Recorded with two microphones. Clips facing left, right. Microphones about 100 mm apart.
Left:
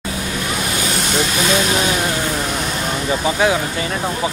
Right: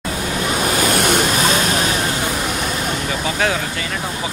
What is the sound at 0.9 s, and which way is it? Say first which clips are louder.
Vehicle: right 2 dB; 55° right (ahead or behind).